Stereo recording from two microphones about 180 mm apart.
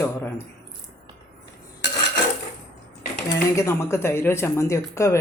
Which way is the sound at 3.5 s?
15° left (ahead or behind).